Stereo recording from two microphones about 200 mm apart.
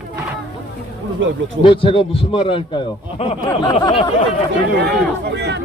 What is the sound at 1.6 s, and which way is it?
A man's voice, 25° left (ahead or behind).